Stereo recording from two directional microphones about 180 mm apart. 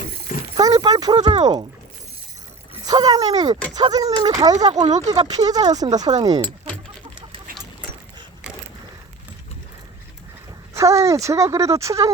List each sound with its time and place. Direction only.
0.5 s a sound: 20° right (ahead or behind)
2.8 s speech: 20° right (ahead or behind)
4.7 s speech: 40° right (ahead or behind)
5.0 s speech: 20° right (ahead or behind)
10.8 s a woman's voice: 15° right (ahead or behind)